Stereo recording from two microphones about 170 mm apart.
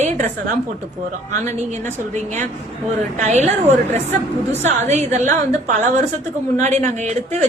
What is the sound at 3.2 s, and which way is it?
Speech, 45° right (ahead or behind).